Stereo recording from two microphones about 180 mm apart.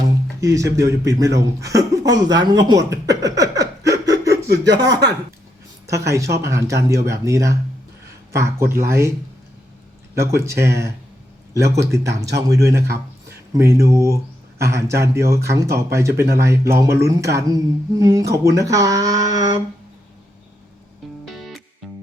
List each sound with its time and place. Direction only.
0.3 s speech: 20° right (ahead or behind)
4.4 s speech: 65° right (ahead or behind)
4.7 s speech: 20° right (ahead or behind)
10.2 s speech: 15° right (ahead or behind)
21.2 s music: centre (ahead or behind)